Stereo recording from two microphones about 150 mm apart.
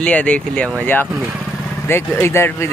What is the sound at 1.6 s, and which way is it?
Vehicle, 15° left (ahead or behind).